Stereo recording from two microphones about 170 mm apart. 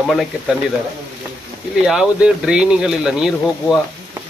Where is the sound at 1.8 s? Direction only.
5° right (ahead or behind).